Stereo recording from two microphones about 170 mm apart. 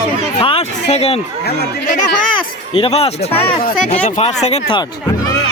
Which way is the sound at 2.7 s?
35° left (ahead or behind).